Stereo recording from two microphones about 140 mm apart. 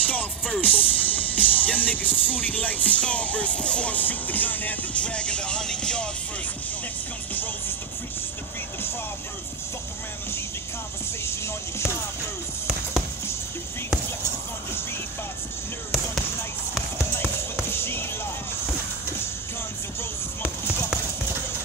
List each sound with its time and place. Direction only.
0.1 s music: 10° left (ahead or behind)
11.2 s speech: 20° left (ahead or behind)
17.6 s music: 15° left (ahead or behind)